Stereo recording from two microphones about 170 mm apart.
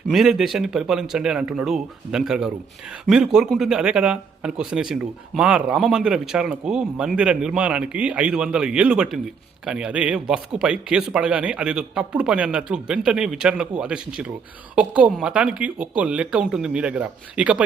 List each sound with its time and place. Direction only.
0.1 s speech: centre (ahead or behind)